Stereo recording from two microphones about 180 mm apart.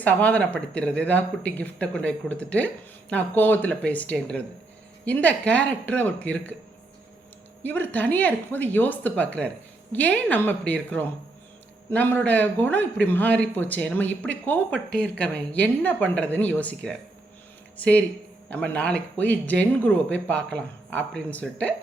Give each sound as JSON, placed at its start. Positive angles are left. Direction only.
{"t": 0.0, "sound": "speech", "side_deg": 10}
{"t": 7.6, "sound": "speech", "side_deg": 10}